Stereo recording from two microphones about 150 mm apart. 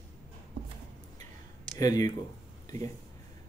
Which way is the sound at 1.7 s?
25° left (ahead or behind).